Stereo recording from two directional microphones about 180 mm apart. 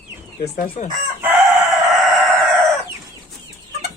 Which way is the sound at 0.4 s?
55° left (ahead or behind).